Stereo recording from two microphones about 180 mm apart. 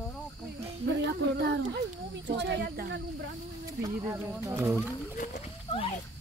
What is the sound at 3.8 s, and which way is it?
Speech, 20° right (ahead or behind).